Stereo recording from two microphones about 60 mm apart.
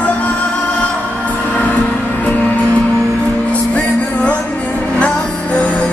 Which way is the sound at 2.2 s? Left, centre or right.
Left.